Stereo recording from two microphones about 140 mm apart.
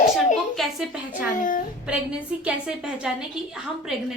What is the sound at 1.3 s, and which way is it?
Speech, 70° left (ahead or behind).